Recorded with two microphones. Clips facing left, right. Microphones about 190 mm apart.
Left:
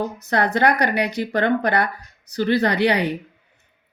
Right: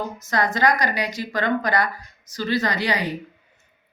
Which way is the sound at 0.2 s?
65° left (ahead or behind).